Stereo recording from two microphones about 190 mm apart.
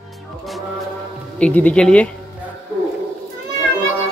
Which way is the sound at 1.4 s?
5° left (ahead or behind).